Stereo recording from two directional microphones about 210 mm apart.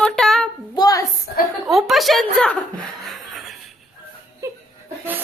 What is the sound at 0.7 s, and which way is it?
Speech, 20° left (ahead or behind).